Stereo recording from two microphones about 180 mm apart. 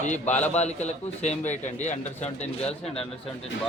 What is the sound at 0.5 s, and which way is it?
A man's voice, 40° left (ahead or behind).